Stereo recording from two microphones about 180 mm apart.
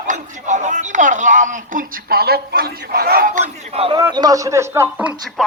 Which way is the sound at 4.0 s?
20° right (ahead or behind).